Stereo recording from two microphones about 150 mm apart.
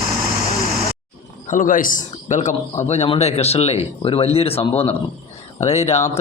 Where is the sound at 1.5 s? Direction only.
65° left (ahead or behind).